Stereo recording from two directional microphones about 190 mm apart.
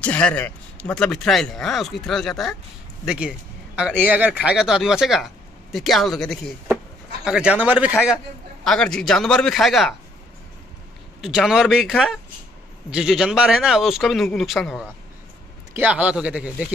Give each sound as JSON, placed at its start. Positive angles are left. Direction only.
{"t": 0.0, "sound": "a man's voice", "side_deg": 5}
{"t": 8.6, "sound": "a man's voice", "side_deg": 5}
{"t": 11.1, "sound": "a man's voice", "side_deg": 0}